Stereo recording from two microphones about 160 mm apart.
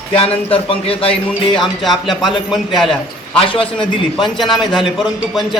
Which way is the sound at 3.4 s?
35° left (ahead or behind).